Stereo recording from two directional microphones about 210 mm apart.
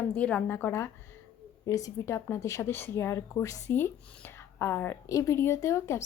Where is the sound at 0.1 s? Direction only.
5° left (ahead or behind).